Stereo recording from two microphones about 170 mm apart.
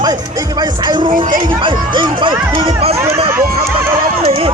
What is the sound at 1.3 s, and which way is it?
Speech, 30° right (ahead or behind).